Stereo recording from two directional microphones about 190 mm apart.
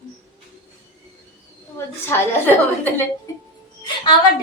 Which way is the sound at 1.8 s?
10° left (ahead or behind).